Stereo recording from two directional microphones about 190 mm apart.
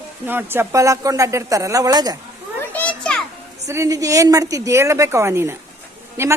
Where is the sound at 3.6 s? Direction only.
15° right (ahead or behind).